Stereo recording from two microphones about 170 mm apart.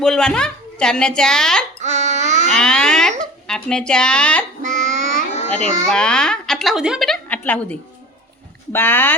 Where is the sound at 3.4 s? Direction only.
5° left (ahead or behind).